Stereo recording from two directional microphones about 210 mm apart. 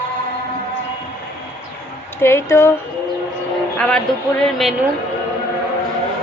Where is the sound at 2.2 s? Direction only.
10° left (ahead or behind).